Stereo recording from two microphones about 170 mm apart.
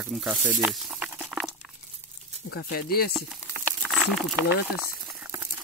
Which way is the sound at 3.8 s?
Centre (ahead or behind).